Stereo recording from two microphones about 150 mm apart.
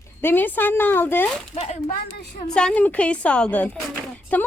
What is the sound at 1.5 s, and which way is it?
Speech, 45° left (ahead or behind).